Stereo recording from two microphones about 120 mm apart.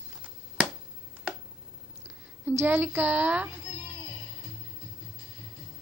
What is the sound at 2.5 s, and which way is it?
A woman's voice, 15° right (ahead or behind).